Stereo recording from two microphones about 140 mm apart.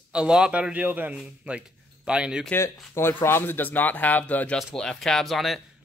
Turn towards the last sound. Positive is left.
turn(degrees=0)  # may be behind; listen again after turning